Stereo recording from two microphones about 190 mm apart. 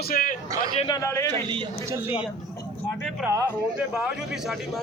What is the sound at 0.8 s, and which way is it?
Speech, 20° left (ahead or behind).